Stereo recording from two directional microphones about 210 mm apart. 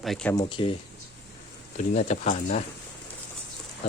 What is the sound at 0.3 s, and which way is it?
Speech, 25° left (ahead or behind).